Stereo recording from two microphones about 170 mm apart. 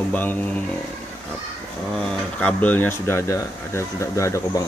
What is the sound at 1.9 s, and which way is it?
Speech, 5° left (ahead or behind).